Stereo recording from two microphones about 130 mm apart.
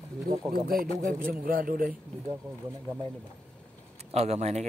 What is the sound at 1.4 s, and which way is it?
Speech, 90° right.